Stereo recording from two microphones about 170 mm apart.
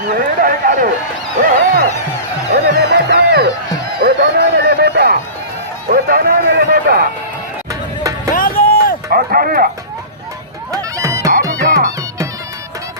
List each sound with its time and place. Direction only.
0.1 s a sound: 55° right (ahead or behind)
1.4 s owl: 55° right (ahead or behind)
2.5 s music: 70° right (ahead or behind)
4.0 s a man's voice: 65° right (ahead or behind)
7.7 s music: 20° right (ahead or behind)
8.3 s music: 55° left (ahead or behind)
9.0 s speech: 60° right (ahead or behind)
10.7 s music: 20° right (ahead or behind)